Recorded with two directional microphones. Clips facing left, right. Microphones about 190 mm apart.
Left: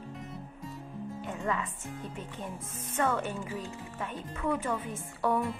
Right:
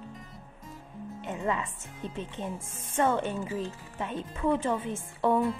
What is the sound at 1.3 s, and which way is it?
A woman's voice, 25° right (ahead or behind).